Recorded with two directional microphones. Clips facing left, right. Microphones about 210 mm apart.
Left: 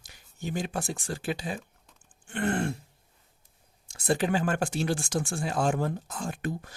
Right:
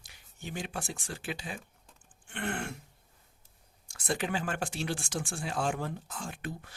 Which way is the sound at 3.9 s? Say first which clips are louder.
Left 6 dB; 35° left (ahead or behind).